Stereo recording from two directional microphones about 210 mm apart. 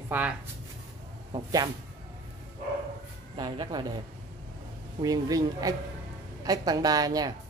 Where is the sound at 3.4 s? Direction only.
20° right (ahead or behind).